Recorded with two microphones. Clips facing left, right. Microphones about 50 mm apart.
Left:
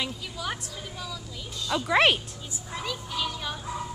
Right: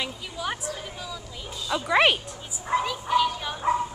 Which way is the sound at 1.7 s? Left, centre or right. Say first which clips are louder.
Right 1 dB; centre.